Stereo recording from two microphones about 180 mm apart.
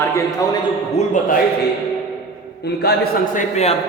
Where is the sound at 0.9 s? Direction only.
45° left (ahead or behind).